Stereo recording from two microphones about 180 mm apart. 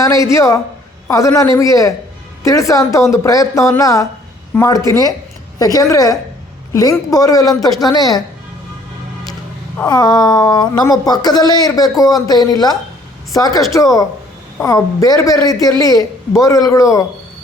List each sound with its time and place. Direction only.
0.0 s speech: 20° left (ahead or behind)
9.8 s speech: 20° left (ahead or behind)